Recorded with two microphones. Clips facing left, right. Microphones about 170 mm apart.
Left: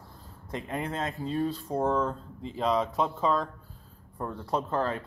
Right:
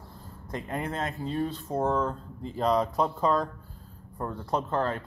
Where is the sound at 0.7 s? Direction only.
30° right (ahead or behind).